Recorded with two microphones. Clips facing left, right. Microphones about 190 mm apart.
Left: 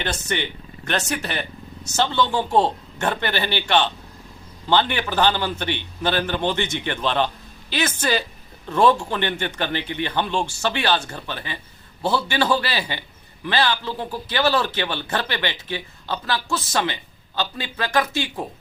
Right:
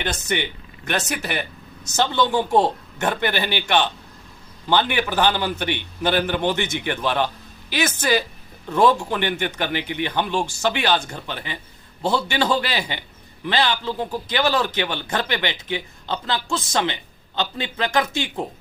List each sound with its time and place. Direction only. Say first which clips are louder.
0.0 s a man's voice: right 1 dB; 15° right (ahead or behind)